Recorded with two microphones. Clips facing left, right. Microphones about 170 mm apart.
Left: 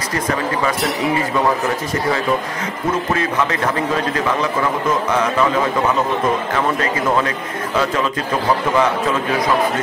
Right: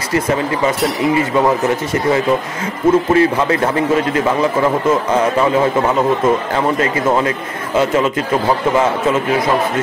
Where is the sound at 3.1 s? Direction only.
30° right (ahead or behind).